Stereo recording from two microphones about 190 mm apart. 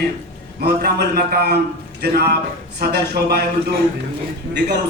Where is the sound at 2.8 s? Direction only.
55° right (ahead or behind).